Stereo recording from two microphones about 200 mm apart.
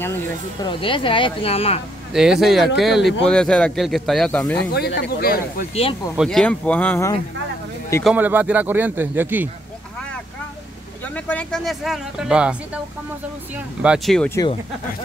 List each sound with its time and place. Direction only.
0.0 s speech: 15° left (ahead or behind)
0.7 s speech: 25° left (ahead or behind)
2.1 s speech: centre (ahead or behind)
4.7 s speech: 55° left (ahead or behind)
6.1 s speech: centre (ahead or behind)
8.0 s speech: 5° right (ahead or behind)
11.1 s speech: 5° left (ahead or behind)
13.8 s speech: centre (ahead or behind)